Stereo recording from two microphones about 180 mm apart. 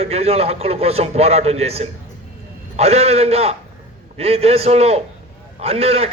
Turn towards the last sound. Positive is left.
turn(degrees=-35)  # may be behind; listen again after turning